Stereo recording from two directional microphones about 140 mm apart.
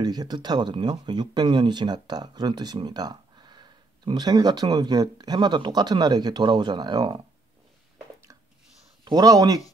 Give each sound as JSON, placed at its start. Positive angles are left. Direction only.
{"t": 0.0, "sound": "speech", "side_deg": -30}
{"t": 9.0, "sound": "speech", "side_deg": -25}